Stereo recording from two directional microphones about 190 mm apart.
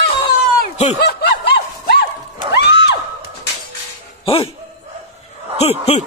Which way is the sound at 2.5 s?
65° left (ahead or behind).